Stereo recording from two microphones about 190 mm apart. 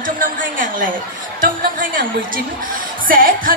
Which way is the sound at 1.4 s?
45° right (ahead or behind).